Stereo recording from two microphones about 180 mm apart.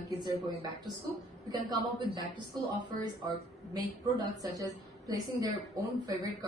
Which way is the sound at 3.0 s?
20° right (ahead or behind).